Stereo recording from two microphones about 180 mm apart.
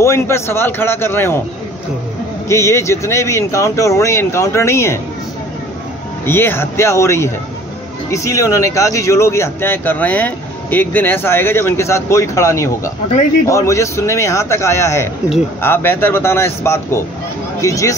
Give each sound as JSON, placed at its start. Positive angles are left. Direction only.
{"t": 0.0, "sound": "speech", "side_deg": 15}
{"t": 2.4, "sound": "speech", "side_deg": 15}
{"t": 6.2, "sound": "speech", "side_deg": 10}